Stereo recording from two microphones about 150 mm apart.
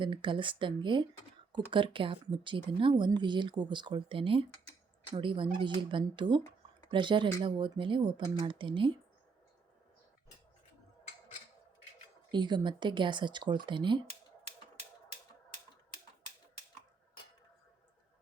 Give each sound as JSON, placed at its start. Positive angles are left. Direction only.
{"t": 0.0, "sound": "speech", "side_deg": -35}
{"t": 12.3, "sound": "speech", "side_deg": -30}